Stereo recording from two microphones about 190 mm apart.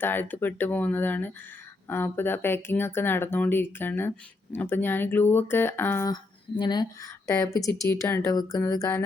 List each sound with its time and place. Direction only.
0.0 s speech: 10° left (ahead or behind)